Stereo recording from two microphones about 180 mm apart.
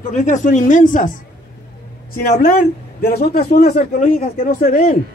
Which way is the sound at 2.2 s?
55° left (ahead or behind).